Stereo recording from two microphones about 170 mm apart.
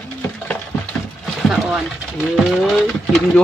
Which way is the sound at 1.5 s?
5° right (ahead or behind).